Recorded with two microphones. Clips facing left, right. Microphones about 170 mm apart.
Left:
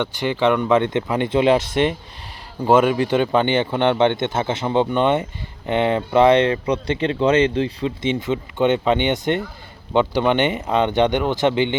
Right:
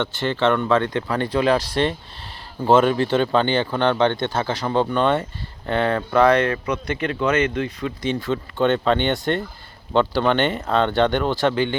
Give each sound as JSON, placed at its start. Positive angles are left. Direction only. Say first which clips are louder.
{"t": 0.0, "sound": "speech", "louder": "left 1 dB", "side_deg": 15}